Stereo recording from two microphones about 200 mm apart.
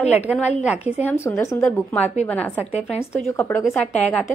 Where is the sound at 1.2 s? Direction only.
15° left (ahead or behind).